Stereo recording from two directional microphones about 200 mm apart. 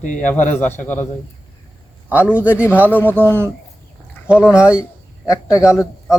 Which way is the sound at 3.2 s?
10° right (ahead or behind).